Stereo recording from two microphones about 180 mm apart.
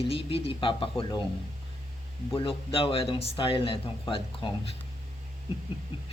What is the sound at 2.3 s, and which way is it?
Speech, 30° left (ahead or behind).